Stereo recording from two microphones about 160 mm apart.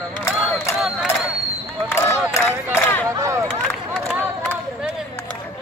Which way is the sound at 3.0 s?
20° right (ahead or behind).